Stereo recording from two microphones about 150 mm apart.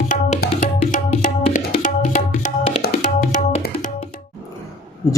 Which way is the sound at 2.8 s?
75° left (ahead or behind).